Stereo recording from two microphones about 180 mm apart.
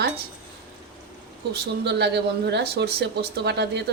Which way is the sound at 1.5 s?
70° right (ahead or behind).